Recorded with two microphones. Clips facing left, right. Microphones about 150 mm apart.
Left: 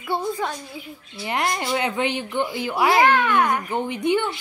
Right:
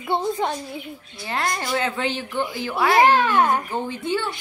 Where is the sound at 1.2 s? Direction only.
20° left (ahead or behind).